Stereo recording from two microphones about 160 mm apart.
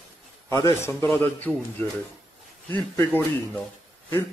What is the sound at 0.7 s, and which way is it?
Speech, 15° left (ahead or behind).